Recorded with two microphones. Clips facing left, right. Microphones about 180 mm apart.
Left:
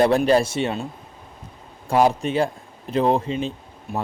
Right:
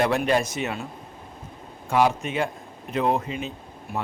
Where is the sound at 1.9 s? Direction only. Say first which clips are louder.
Left 3 dB; 35° left (ahead or behind).